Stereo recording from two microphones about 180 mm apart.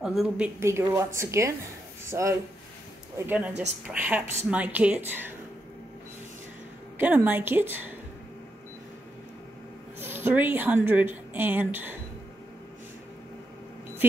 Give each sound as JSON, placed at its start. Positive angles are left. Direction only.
{"t": 0.0, "sound": "a woman's voice", "side_deg": 0}
{"t": 0.6, "sound": "a woman's voice", "side_deg": -15}
{"t": 7.0, "sound": "a woman's voice", "side_deg": -10}
{"t": 9.9, "sound": "a woman's voice", "side_deg": -10}